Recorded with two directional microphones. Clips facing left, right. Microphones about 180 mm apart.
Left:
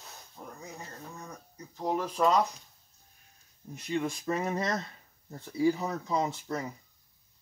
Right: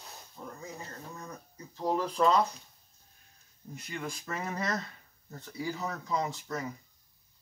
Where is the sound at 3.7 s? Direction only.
25° left (ahead or behind).